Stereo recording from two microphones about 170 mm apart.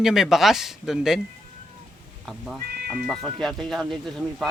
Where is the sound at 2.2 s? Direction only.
Centre (ahead or behind).